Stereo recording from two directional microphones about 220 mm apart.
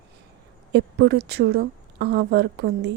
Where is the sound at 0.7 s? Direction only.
50° right (ahead or behind).